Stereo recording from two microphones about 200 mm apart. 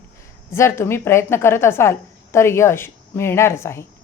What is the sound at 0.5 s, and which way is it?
A woman's voice, 15° left (ahead or behind).